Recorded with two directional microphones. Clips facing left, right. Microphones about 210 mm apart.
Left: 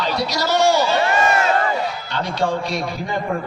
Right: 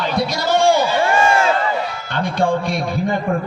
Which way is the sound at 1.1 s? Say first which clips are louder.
Right 2 dB; 30° right (ahead or behind).